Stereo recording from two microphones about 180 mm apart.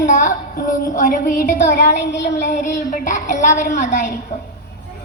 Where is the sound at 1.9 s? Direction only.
75° left (ahead or behind).